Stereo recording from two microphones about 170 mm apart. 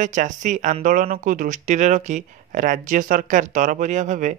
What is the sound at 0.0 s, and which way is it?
Speech, 45° right (ahead or behind).